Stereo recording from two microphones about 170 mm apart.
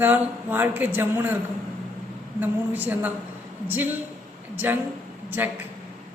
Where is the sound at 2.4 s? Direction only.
10° right (ahead or behind).